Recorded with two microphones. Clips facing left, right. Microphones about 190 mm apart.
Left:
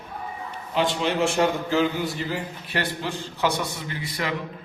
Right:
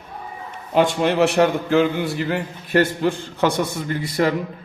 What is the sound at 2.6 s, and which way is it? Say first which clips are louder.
A man's voice: right 12 dB; 50° right (ahead or behind).